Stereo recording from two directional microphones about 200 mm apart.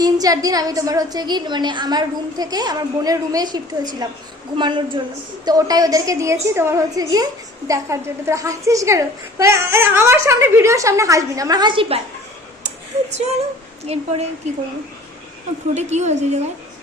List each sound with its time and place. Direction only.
0.0 s a woman's voice: 20° right (ahead or behind)
13.8 s a woman's voice: 30° right (ahead or behind)
15.7 s a woman's voice: 35° right (ahead or behind)